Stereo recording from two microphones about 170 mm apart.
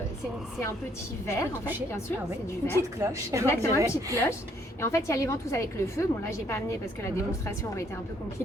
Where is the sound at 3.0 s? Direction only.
15° right (ahead or behind).